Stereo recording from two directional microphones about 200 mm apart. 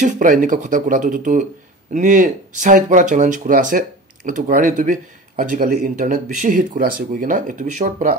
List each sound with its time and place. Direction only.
0.0 s speech: 40° right (ahead or behind)